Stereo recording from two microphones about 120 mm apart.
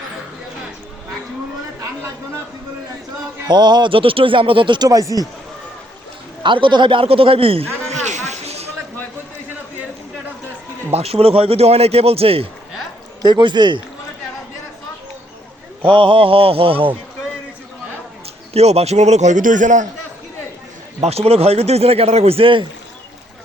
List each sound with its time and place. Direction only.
3.4 s speech: 35° right (ahead or behind)
6.4 s a man's voice: 40° right (ahead or behind)
8.0 s a sound: 75° right (ahead or behind)
10.9 s a man's voice: 55° right (ahead or behind)
13.2 s speech: 35° right (ahead or behind)
15.8 s a man's voice: 45° right (ahead or behind)
18.5 s a man's voice: 60° right (ahead or behind); by 19.9 s 90° right
21.0 s a man's voice: 60° right (ahead or behind)